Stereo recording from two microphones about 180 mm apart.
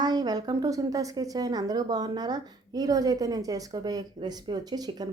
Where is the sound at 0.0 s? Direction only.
20° right (ahead or behind).